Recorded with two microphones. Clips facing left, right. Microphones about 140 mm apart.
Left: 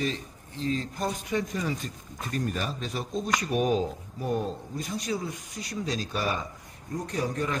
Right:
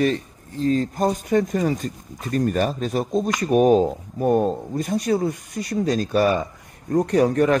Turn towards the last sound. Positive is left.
turn(degrees=-65)  # may be behind; listen again after turning